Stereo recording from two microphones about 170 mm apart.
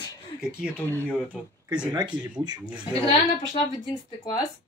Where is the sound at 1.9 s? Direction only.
25° right (ahead or behind).